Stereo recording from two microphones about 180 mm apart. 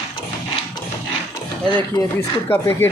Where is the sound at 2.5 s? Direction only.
15° left (ahead or behind).